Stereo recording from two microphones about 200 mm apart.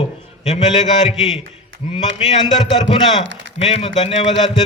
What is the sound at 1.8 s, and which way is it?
Speech, 25° left (ahead or behind).